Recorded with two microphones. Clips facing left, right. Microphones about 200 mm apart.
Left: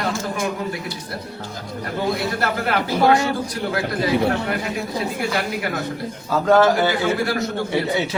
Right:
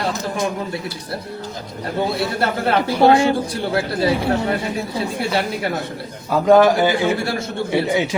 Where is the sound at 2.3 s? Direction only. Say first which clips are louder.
Right 3 dB; 30° right (ahead or behind).